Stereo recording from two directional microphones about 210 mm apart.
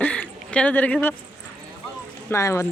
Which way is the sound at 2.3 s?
15° left (ahead or behind).